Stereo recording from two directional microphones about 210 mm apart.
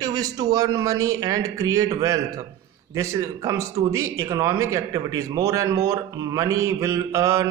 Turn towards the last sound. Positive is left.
turn(degrees=-15)  # may be behind; listen again after turning